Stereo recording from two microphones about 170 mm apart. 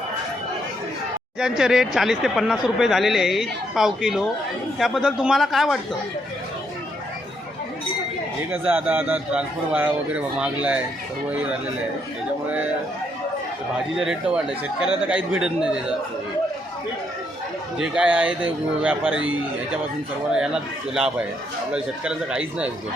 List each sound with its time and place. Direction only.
1.4 s speech: 5° right (ahead or behind)
8.6 s a man's voice: 10° right (ahead or behind)
13.9 s speech: 5° right (ahead or behind)
17.7 s a man's voice: 5° right (ahead or behind)
20.9 s speech: 5° right (ahead or behind)